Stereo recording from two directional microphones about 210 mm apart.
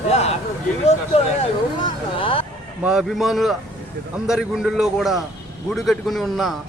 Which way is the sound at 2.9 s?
Centre (ahead or behind).